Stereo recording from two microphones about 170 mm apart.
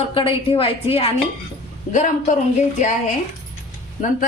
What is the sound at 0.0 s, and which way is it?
A woman's voice, 30° left (ahead or behind).